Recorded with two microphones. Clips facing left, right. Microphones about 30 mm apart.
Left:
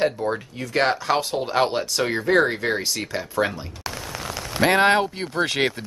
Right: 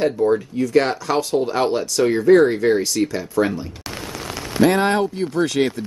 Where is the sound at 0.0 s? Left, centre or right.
Centre.